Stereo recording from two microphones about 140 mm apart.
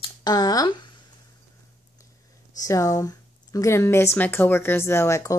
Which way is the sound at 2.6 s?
25° left (ahead or behind).